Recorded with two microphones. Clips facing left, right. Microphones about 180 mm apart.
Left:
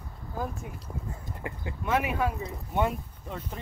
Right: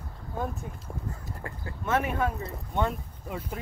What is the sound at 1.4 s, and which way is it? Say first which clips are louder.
Speech: left 2 dB; 15° left (ahead or behind).